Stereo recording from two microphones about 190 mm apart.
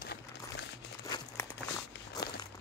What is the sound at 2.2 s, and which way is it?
Walk, 20° left (ahead or behind).